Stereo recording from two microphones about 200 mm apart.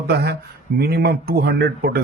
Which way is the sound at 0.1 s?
50° right (ahead or behind).